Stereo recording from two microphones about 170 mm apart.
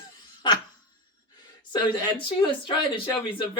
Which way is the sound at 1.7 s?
30° left (ahead or behind).